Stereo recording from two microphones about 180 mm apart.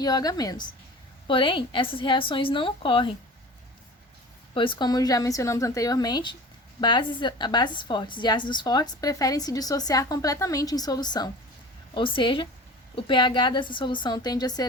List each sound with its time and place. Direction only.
0.0 s a woman's voice: 20° left (ahead or behind)
4.5 s a woman's voice: 25° left (ahead or behind)